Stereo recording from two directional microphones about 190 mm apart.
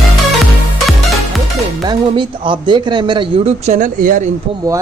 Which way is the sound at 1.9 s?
25° right (ahead or behind).